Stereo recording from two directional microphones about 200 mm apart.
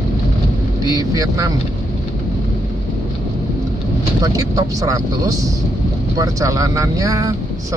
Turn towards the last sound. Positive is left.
turn(degrees=-15)  # may be behind; listen again after turning